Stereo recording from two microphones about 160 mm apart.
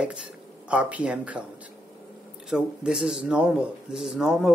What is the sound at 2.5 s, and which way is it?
Speech, 5° right (ahead or behind).